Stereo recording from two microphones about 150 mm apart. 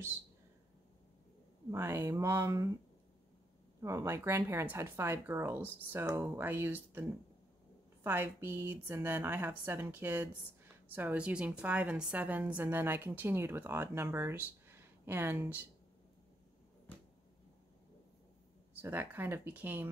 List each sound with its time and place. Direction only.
1.7 s speech: 15° right (ahead or behind)
3.8 s speech: 20° right (ahead or behind)
18.8 s speech: 15° right (ahead or behind)